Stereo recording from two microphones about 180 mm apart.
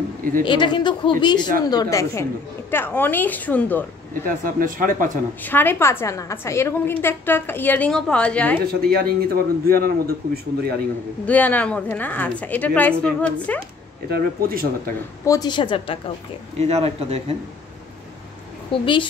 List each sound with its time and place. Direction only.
0.5 s a woman's voice: 25° left (ahead or behind); by 3.8 s 10° left (ahead or behind)
4.1 s speech: 50° right (ahead or behind)
5.4 s a woman's voice: 10° left (ahead or behind)
8.6 s a man's voice: 55° right (ahead or behind)
11.2 s a woman's voice: 10° left (ahead or behind)
14.1 s a man's voice: 55° right (ahead or behind)
15.2 s a woman's voice: 20° left (ahead or behind)
16.5 s a man's voice: 35° right (ahead or behind)
18.7 s a woman's voice: 25° left (ahead or behind)